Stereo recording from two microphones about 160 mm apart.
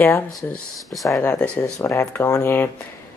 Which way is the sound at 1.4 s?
10° left (ahead or behind).